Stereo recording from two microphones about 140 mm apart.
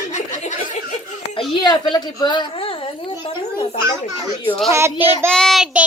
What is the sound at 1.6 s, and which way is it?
A woman's voice, 30° left (ahead or behind).